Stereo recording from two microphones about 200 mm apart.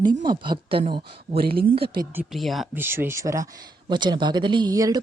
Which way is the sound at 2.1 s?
Centre (ahead or behind).